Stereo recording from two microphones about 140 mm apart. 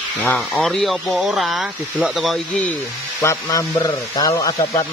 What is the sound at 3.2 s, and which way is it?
Speech, 20° left (ahead or behind).